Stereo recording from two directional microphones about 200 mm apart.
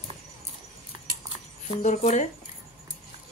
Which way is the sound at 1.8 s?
35° left (ahead or behind).